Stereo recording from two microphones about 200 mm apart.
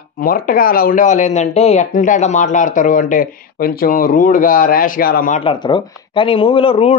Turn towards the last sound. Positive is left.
turn(degrees=30)  # may be behind; listen again after turning